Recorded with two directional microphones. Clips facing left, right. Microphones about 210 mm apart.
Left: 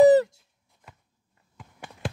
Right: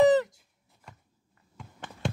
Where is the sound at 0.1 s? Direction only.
35° left (ahead or behind).